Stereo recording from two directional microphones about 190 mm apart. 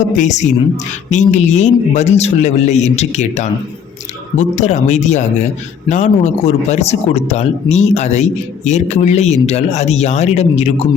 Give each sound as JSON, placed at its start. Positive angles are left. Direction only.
{"t": 0.0, "sound": "speech", "side_deg": 40}